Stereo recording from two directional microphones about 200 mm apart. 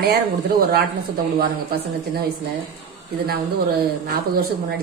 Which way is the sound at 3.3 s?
50° right (ahead or behind).